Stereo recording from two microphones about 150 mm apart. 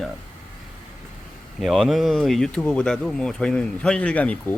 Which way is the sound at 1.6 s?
Centre (ahead or behind).